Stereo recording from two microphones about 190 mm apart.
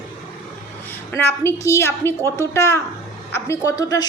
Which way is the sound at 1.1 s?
15° left (ahead or behind).